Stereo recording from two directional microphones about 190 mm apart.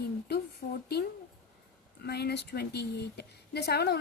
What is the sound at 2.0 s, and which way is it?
Speech, 60° left (ahead or behind).